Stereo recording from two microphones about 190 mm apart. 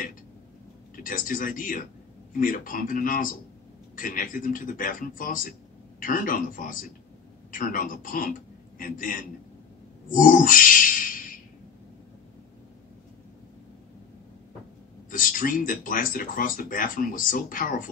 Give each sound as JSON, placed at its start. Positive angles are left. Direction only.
{"t": 0.9, "sound": "a man's voice", "side_deg": 45}
{"t": 10.0, "sound": "a sound", "side_deg": 45}
{"t": 15.0, "sound": "speech", "side_deg": 45}